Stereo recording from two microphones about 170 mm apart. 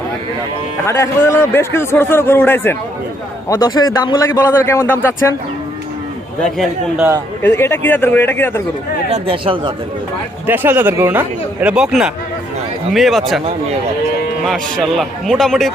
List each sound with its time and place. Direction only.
0.9 s a man's voice: 15° left (ahead or behind)
3.5 s speech: 25° left (ahead or behind)
7.4 s a man's voice: 15° left (ahead or behind)
9.0 s speech: 35° right (ahead or behind)
10.4 s a man's voice: 10° right (ahead or behind)
14.4 s a man's voice: centre (ahead or behind)